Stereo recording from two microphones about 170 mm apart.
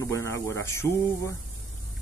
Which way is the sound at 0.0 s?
15° left (ahead or behind).